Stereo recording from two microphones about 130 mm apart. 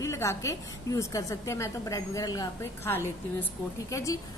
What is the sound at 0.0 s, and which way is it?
A woman's voice, 20° left (ahead or behind).